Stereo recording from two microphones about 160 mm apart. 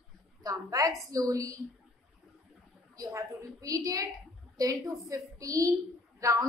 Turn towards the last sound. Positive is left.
turn(degrees=-20)  # may be behind; listen again after turning